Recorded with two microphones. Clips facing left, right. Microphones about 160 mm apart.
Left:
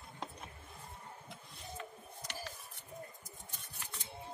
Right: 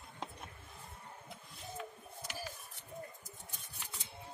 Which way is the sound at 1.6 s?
5° right (ahead or behind).